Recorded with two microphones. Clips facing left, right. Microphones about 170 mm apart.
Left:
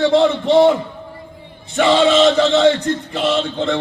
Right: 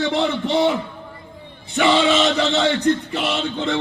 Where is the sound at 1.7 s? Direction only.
50° left (ahead or behind).